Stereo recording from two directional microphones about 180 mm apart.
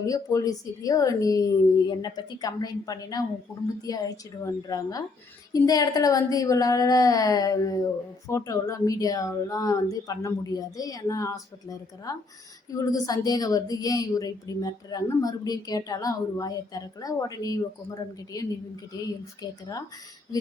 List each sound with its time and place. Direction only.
0.0 s a woman's voice: 20° left (ahead or behind)